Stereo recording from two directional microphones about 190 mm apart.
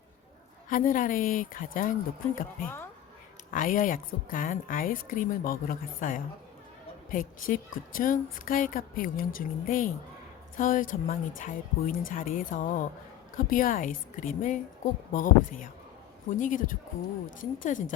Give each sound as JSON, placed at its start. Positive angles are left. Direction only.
{"t": 0.7, "sound": "speech", "side_deg": 45}